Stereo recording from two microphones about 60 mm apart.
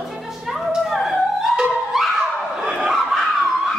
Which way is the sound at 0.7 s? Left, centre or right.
Centre.